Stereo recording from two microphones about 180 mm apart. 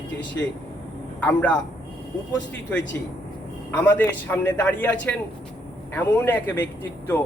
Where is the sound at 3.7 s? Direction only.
10° left (ahead or behind).